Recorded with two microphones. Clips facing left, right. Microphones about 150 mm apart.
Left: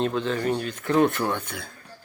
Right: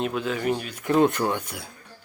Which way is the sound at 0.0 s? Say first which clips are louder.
Left 1 dB; 10° right (ahead or behind).